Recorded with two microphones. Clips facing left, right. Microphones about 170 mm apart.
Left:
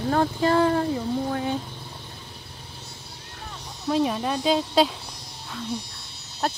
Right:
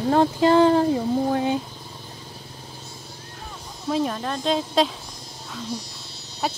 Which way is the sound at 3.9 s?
5° left (ahead or behind).